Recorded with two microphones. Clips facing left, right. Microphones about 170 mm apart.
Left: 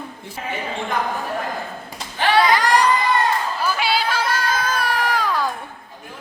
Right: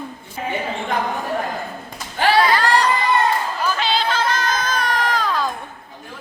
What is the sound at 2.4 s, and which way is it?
Crowd, 15° left (ahead or behind).